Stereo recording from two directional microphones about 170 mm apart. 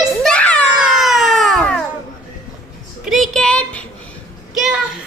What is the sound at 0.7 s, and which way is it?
Baby cry, 5° right (ahead or behind).